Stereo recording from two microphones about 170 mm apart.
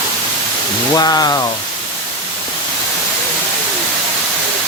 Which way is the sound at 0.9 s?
25° left (ahead or behind).